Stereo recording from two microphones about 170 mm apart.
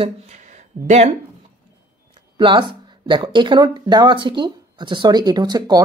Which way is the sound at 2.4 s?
30° right (ahead or behind).